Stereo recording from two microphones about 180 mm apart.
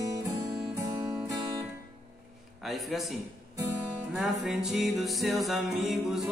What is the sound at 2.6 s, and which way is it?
Speech, centre (ahead or behind).